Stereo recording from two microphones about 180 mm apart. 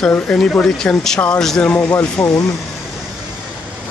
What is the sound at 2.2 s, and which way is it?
Speech, 20° left (ahead or behind).